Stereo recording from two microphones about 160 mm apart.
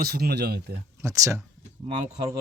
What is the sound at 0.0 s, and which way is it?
Speech, 75° right (ahead or behind).